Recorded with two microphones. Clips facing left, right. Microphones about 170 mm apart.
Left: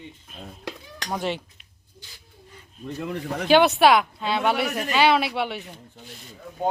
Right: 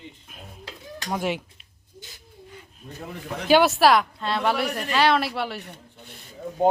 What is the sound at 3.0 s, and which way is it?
Speech, 70° left (ahead or behind).